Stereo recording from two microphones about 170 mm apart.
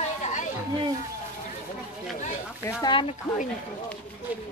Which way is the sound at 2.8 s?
30° left (ahead or behind).